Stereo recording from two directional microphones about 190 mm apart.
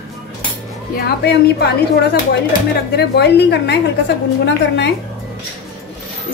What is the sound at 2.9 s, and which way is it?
A woman's voice, 60° left (ahead or behind).